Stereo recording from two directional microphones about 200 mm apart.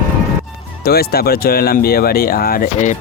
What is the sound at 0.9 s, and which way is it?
Speech, 50° left (ahead or behind).